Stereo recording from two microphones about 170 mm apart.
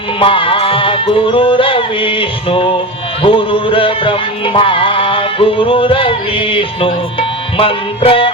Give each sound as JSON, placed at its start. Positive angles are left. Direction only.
{"t": 0.2, "sound": "music", "side_deg": 30}